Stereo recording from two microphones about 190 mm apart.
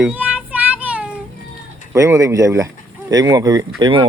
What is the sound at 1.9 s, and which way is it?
Speech, 15° right (ahead or behind).